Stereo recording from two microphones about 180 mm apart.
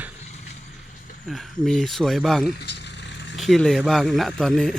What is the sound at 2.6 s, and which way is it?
Vehicle, 70° left (ahead or behind).